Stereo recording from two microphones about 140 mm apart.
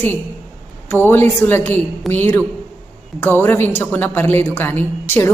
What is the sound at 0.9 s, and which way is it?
Speech, 15° left (ahead or behind).